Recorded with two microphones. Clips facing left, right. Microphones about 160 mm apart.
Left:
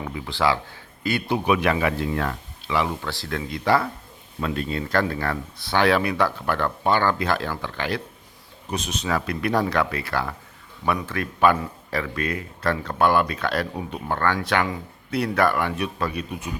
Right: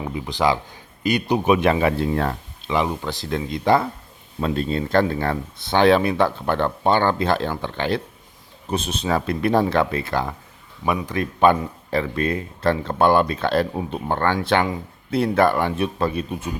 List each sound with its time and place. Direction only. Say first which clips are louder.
0.0 s speech: right 2 dB; 20° right (ahead or behind)
2.7 s speech: right 2 dB; 20° right (ahead or behind)